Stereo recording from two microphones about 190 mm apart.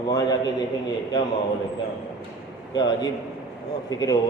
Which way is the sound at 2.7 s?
20° left (ahead or behind).